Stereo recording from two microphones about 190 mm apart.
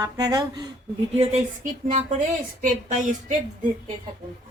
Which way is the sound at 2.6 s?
40° right (ahead or behind).